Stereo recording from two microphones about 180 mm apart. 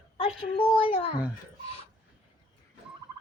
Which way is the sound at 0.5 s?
35° left (ahead or behind).